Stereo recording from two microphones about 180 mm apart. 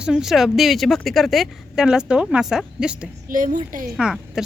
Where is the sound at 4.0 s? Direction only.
5° right (ahead or behind).